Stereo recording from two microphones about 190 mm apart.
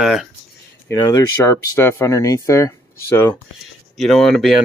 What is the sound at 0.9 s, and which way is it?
Speech, 15° left (ahead or behind).